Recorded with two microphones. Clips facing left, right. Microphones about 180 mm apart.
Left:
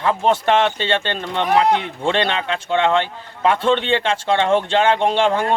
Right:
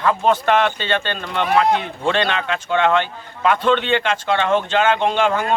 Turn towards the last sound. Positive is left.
turn(degrees=30)  # may be behind; listen again after turning